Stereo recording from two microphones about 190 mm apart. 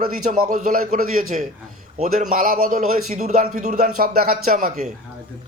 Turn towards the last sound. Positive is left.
turn(degrees=-50)  # may be behind; listen again after turning